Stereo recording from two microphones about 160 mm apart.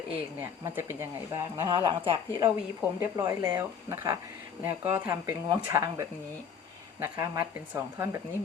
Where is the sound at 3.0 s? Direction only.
20° right (ahead or behind).